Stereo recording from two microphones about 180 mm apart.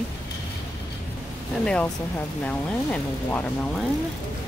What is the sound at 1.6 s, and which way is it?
Speech, 5° left (ahead or behind).